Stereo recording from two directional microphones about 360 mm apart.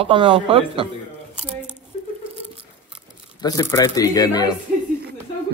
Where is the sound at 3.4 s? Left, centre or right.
Centre.